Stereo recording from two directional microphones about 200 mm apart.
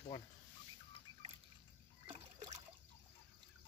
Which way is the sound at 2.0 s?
30° right (ahead or behind).